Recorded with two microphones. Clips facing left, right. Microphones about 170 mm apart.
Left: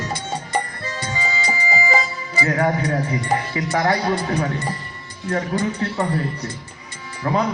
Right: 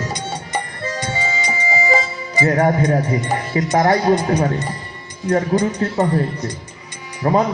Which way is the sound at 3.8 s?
40° right (ahead or behind).